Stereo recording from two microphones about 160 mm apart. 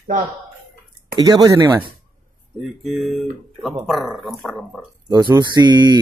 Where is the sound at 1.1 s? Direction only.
25° right (ahead or behind).